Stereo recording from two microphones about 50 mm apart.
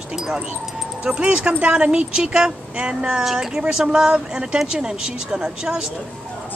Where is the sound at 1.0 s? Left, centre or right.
Right.